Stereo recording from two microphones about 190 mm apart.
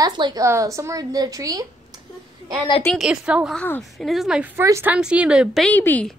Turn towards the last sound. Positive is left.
turn(degrees=10)  # may be behind; listen again after turning